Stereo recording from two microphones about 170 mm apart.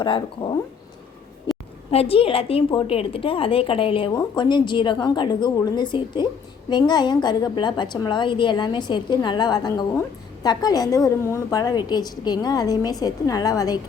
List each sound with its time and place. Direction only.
0.0 s a woman's voice: 30° left (ahead or behind)
1.9 s a woman's voice: 35° left (ahead or behind)